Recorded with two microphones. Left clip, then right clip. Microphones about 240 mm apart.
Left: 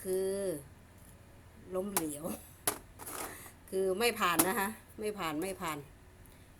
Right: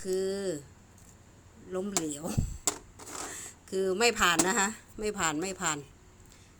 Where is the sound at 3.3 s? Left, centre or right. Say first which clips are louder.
Right 3 dB; right.